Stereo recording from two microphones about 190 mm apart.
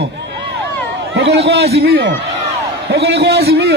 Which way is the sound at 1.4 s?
60° right (ahead or behind).